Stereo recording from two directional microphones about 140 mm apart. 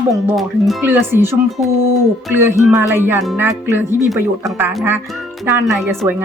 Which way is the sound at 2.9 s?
15° right (ahead or behind).